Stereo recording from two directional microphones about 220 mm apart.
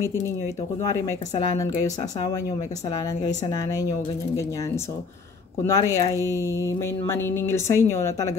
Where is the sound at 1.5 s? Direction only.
15° left (ahead or behind).